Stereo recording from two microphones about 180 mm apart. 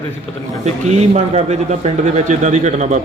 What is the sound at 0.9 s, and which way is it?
Speech, 35° right (ahead or behind).